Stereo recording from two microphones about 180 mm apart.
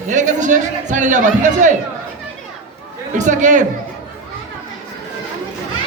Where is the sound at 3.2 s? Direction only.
40° right (ahead or behind).